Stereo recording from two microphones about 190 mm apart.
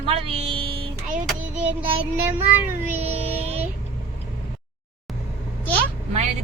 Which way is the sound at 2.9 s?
35° right (ahead or behind).